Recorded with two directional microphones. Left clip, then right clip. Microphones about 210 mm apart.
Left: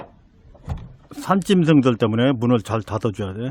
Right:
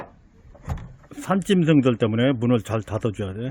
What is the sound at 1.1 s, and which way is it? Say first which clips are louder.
Speech: left 3 dB; 15° left (ahead or behind).